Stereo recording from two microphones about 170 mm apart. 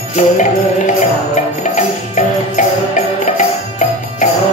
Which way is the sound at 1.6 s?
45° left (ahead or behind).